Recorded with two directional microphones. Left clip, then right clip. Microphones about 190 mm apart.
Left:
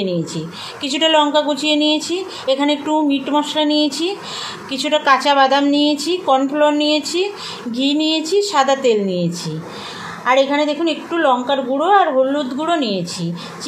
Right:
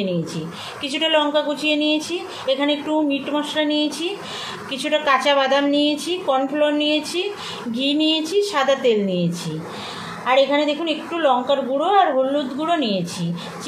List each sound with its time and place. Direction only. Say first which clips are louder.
0.0 s a woman's voice: left 3 dB; 40° left (ahead or behind)